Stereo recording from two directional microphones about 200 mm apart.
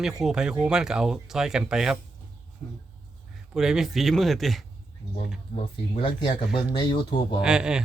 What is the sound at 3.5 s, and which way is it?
Speech, centre (ahead or behind).